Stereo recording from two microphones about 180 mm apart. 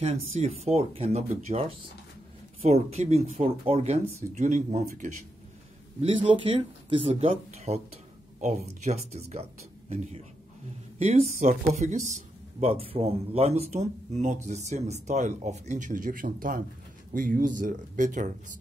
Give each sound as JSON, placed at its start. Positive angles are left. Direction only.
{"t": 0.0, "sound": "speech", "side_deg": -35}
{"t": 4.2, "sound": "speech", "side_deg": -45}
{"t": 5.9, "sound": "speech", "side_deg": -30}